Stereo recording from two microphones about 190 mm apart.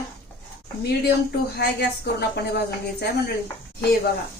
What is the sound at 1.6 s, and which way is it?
Speech, 60° left (ahead or behind).